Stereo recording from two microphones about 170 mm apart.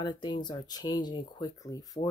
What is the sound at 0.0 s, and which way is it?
Speech, 25° left (ahead or behind).